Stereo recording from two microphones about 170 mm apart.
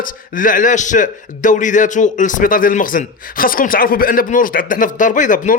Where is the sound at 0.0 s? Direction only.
55° left (ahead or behind).